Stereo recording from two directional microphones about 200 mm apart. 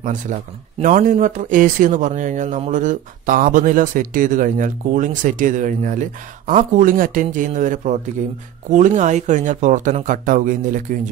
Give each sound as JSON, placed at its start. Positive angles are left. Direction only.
{"t": 0.0, "sound": "speech", "side_deg": -40}